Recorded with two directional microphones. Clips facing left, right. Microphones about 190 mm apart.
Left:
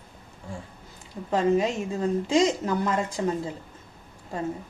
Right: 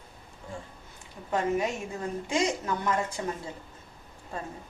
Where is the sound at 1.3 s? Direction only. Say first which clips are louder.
Left 5 dB; 25° left (ahead or behind).